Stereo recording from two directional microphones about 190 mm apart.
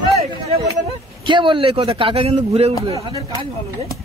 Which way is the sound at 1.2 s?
25° right (ahead or behind).